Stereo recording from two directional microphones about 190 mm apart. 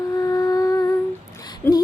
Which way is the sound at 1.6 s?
10° left (ahead or behind).